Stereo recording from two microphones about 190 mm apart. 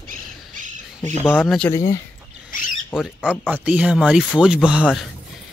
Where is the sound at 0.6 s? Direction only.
40° right (ahead or behind).